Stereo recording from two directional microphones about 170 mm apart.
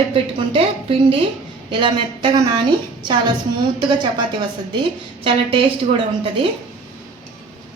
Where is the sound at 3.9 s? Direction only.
25° right (ahead or behind).